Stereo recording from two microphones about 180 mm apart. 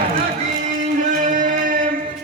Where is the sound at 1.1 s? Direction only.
45° right (ahead or behind).